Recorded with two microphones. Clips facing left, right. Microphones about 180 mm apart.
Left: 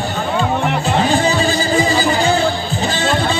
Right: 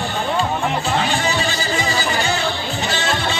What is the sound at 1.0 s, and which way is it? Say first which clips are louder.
Music: left 6 dB; 35° left (ahead or behind).